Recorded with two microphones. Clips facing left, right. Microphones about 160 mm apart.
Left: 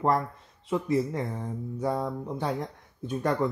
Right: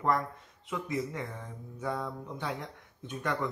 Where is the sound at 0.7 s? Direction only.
30° left (ahead or behind).